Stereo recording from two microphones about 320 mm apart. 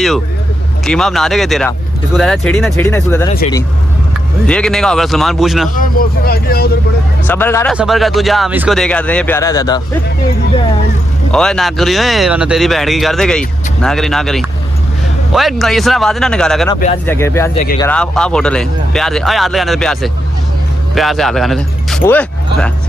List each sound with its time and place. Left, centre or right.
0.8 s speech: centre
4.5 s speech: centre
5.8 s speech: left
7.2 s speech: centre
11.3 s speech: centre